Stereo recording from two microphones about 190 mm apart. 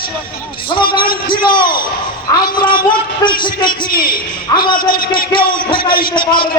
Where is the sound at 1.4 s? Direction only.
25° left (ahead or behind).